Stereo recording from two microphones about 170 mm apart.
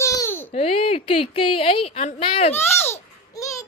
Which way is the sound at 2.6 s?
15° left (ahead or behind).